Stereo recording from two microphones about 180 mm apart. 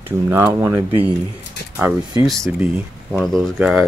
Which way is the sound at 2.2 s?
Centre (ahead or behind).